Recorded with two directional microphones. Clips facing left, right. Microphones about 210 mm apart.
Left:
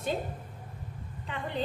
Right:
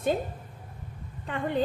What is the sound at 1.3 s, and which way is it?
Speech, 50° right (ahead or behind).